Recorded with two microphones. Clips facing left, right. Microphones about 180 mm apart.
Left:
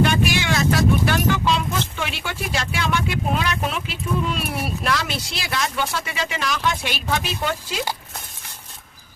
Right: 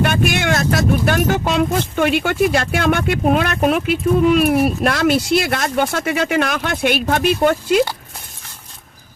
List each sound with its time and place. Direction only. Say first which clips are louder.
0.0 s speech: right 2 dB; 55° right (ahead or behind)